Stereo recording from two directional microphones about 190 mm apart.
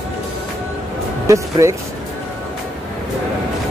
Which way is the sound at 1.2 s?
15° right (ahead or behind).